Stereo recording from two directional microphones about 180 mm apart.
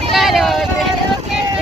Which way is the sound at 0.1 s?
Centre (ahead or behind).